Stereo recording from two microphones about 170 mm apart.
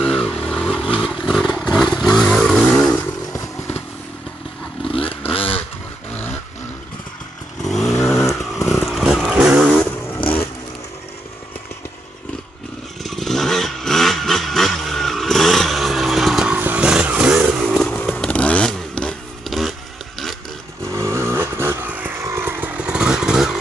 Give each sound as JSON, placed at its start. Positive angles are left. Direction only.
{"t": 0.0, "sound": "vehicle", "side_deg": 5}
{"t": 4.9, "sound": "vehicle", "side_deg": 30}
{"t": 7.6, "sound": "vehicle", "side_deg": 0}
{"t": 9.8, "sound": "vehicle", "side_deg": 10}
{"t": 13.0, "sound": "vehicle", "side_deg": 0}
{"t": 20.8, "sound": "vehicle", "side_deg": -15}